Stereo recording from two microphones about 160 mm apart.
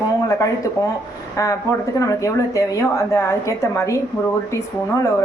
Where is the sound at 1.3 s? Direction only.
20° left (ahead or behind).